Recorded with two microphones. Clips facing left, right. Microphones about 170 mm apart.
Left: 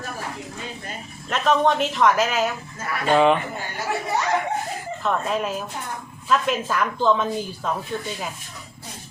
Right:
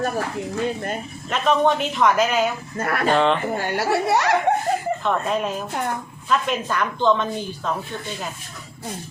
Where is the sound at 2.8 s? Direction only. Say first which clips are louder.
Right 7 dB; 60° right (ahead or behind).